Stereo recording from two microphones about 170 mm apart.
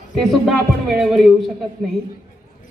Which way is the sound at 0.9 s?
Centre (ahead or behind).